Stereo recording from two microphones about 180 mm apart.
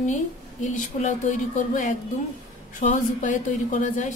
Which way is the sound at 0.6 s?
40° left (ahead or behind).